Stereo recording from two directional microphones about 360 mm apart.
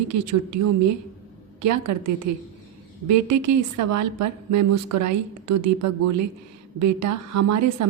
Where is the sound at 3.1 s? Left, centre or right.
Right.